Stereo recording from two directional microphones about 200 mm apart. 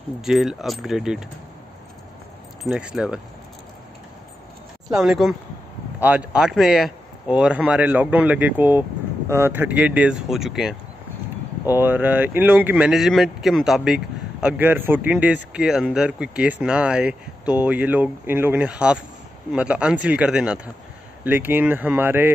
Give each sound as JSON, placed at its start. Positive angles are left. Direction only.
{"t": 0.2, "sound": "speech", "side_deg": 0}
{"t": 2.6, "sound": "speech", "side_deg": -5}
{"t": 4.9, "sound": "speech", "side_deg": 0}